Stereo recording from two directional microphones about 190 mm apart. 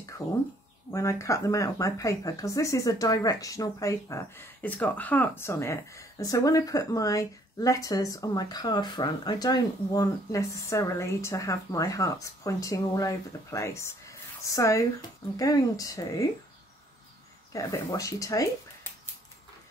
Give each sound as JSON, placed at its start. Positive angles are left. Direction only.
{"t": 0.9, "sound": "speech", "side_deg": 15}
{"t": 17.5, "sound": "speech", "side_deg": 20}